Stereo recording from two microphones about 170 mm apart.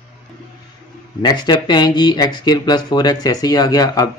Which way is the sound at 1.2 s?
25° left (ahead or behind).